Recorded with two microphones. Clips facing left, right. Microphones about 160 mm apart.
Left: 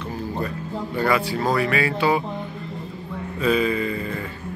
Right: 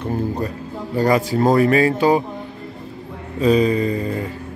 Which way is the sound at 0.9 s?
40° right (ahead or behind).